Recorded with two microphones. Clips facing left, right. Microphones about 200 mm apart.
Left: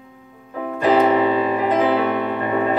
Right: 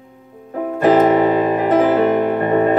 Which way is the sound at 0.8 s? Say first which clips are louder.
Right 3 dB; 45° right (ahead or behind).